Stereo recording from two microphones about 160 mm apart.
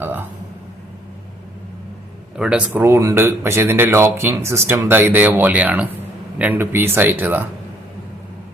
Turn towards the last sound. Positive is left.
turn(degrees=-10)  # may be behind; listen again after turning